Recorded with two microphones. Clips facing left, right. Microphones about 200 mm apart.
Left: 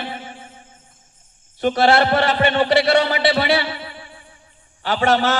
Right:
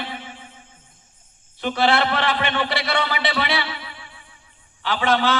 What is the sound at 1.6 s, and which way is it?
A man's voice, 45° left (ahead or behind).